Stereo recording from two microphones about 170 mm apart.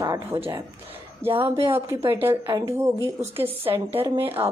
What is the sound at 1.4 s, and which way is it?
A woman's voice, 15° right (ahead or behind).